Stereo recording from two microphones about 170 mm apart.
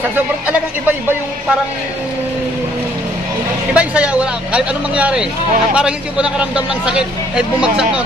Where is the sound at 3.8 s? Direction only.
5° right (ahead or behind).